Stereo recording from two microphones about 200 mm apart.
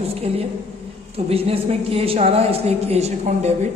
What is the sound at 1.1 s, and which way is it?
A man's voice, 30° right (ahead or behind).